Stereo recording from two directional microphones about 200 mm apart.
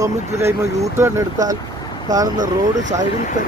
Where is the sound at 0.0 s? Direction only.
15° right (ahead or behind).